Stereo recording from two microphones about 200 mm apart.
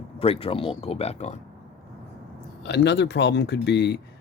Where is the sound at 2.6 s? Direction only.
60° left (ahead or behind).